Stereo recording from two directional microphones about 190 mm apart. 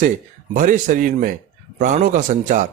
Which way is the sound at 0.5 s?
45° right (ahead or behind).